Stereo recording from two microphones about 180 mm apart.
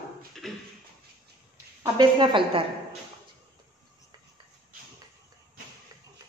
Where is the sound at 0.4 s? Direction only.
Centre (ahead or behind).